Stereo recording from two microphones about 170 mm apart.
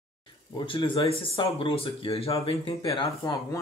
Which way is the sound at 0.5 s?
30° left (ahead or behind).